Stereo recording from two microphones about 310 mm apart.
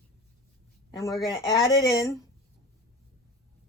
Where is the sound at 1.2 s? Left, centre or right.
Centre.